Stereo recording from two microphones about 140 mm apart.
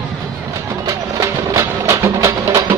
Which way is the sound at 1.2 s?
25° right (ahead or behind).